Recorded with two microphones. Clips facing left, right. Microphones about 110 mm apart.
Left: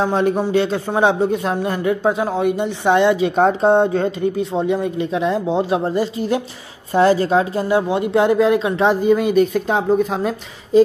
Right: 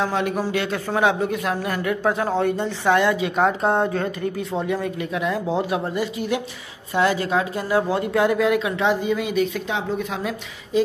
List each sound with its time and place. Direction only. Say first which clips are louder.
0.0 s speech: left 5 dB; 30° left (ahead or behind)